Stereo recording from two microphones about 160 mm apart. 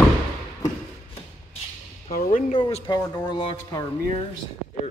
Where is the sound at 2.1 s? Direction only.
60° left (ahead or behind).